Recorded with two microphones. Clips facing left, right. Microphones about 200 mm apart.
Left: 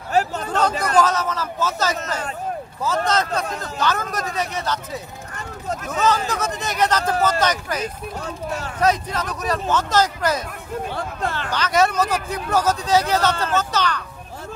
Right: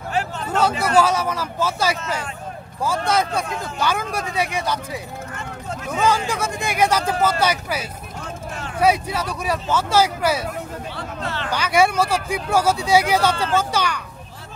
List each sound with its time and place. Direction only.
0.1 s a sound: 40° left (ahead or behind)
0.5 s a sound: 10° right (ahead or behind)
0.9 s speech: 10° right (ahead or behind)
3.1 s speech: 10° right (ahead or behind)
5.9 s speech: 10° right (ahead or behind)
11.0 s speech: 45° left (ahead or behind)
11.5 s speech: 10° right (ahead or behind)